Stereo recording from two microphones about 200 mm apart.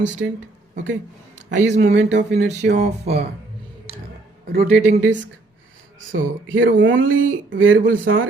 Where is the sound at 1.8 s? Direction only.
60° right (ahead or behind).